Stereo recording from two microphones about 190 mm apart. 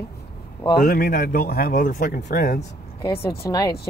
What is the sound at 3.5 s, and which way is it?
Speech, 20° left (ahead or behind).